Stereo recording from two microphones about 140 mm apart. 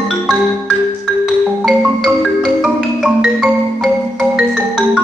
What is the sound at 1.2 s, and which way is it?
Music, 5° right (ahead or behind).